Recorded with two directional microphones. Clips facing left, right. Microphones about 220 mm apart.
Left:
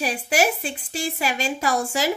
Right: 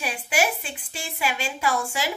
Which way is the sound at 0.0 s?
40° left (ahead or behind).